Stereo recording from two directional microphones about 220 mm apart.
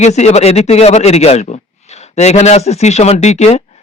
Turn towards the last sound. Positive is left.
turn(degrees=30)  # may be behind; listen again after turning